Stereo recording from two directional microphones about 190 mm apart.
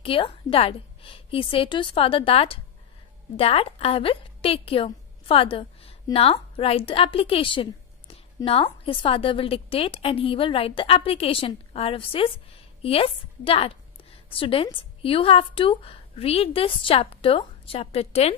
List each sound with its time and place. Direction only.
0.0 s a woman's voice: 30° left (ahead or behind)